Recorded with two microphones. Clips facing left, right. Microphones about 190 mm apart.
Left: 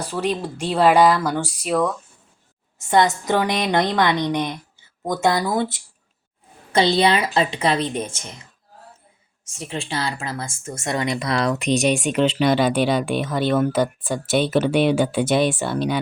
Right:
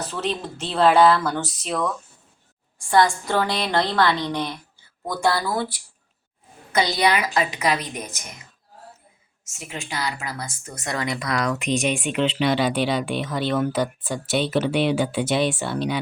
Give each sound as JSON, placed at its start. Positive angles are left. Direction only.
{"t": 0.0, "sound": "speech", "side_deg": 10}
{"t": 2.8, "sound": "a woman's voice", "side_deg": 20}
{"t": 9.4, "sound": "speech", "side_deg": 30}